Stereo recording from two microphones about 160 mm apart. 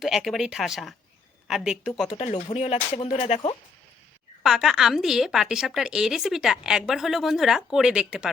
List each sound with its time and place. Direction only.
0.0 s a woman's voice: centre (ahead or behind)
2.1 s speech: 40° left (ahead or behind)
4.4 s a woman's voice: 5° right (ahead or behind)